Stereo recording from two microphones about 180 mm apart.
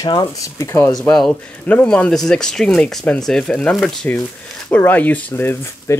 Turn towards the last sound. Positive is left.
turn(degrees=10)  # may be behind; listen again after turning